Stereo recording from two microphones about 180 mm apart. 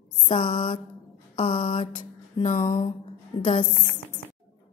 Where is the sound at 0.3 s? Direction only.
45° left (ahead or behind).